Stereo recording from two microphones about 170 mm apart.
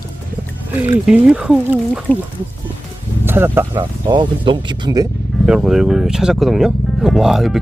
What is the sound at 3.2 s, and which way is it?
Speech, 15° right (ahead or behind).